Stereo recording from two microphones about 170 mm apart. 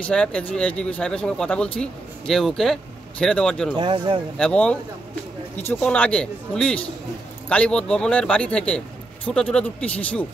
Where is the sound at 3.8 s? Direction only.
25° right (ahead or behind).